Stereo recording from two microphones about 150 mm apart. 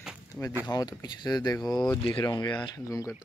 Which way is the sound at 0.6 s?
25° left (ahead or behind).